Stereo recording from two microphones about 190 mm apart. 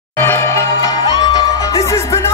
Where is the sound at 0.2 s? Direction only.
15° left (ahead or behind).